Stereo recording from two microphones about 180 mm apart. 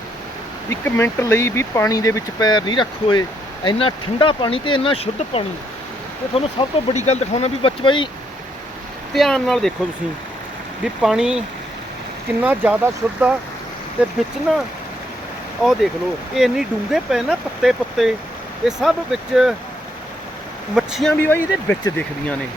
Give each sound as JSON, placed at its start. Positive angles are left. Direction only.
{"t": 0.7, "sound": "speech", "side_deg": 15}
{"t": 9.1, "sound": "speech", "side_deg": 0}
{"t": 11.0, "sound": "speech", "side_deg": -5}
{"t": 14.5, "sound": "speech", "side_deg": 0}
{"t": 16.3, "sound": "speech", "side_deg": 0}
{"t": 20.7, "sound": "speech", "side_deg": 0}
{"t": 21.2, "sound": "speech", "side_deg": 10}